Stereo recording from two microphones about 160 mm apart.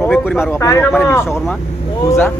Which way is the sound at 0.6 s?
15° left (ahead or behind).